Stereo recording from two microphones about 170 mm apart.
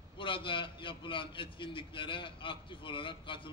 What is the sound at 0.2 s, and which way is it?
A man's voice, 30° left (ahead or behind).